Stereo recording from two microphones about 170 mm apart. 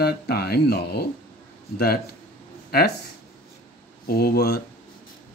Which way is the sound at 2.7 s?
65° left (ahead or behind).